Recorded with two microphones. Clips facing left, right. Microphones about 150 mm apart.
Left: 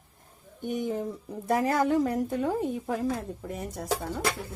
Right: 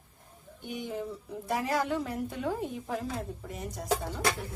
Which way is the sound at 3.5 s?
55° left (ahead or behind).